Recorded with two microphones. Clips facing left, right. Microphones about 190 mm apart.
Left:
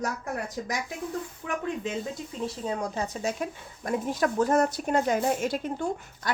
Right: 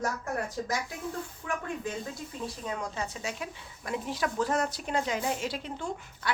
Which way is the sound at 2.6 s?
30° left (ahead or behind).